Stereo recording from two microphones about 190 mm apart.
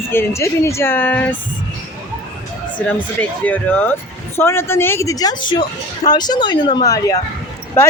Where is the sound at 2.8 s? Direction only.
5° left (ahead or behind).